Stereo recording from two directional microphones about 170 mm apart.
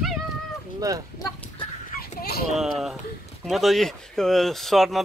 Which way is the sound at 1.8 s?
65° left (ahead or behind).